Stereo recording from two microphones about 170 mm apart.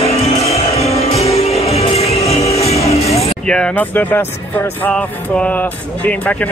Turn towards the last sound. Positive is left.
turn(degrees=10)  # may be behind; listen again after turning